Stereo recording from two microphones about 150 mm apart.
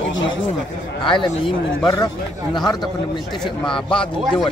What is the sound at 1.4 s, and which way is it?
Speech, 30° left (ahead or behind).